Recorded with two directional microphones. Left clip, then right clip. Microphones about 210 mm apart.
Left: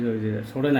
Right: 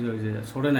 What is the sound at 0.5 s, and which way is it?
Speech, 10° left (ahead or behind).